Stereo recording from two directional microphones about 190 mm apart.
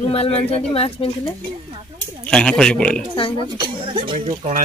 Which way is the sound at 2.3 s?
5° left (ahead or behind).